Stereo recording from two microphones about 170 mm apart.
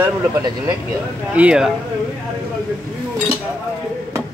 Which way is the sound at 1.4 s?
5° right (ahead or behind).